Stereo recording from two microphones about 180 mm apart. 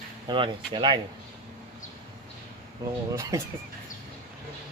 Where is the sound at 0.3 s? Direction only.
25° right (ahead or behind).